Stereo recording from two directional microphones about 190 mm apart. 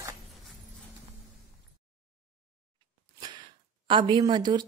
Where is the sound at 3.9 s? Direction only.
25° right (ahead or behind).